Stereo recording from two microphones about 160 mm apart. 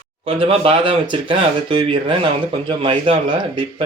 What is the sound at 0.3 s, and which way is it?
Speech, 35° right (ahead or behind).